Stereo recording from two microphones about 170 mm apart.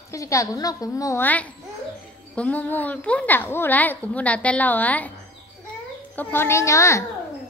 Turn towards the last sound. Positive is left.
turn(degrees=15)  # may be behind; listen again after turning